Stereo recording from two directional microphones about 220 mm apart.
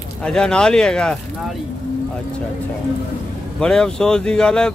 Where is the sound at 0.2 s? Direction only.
5° left (ahead or behind).